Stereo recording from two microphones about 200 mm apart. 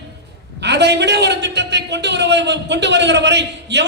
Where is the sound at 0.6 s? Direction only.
60° right (ahead or behind).